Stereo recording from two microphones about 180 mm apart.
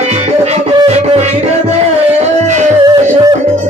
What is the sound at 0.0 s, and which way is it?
Music, 35° right (ahead or behind).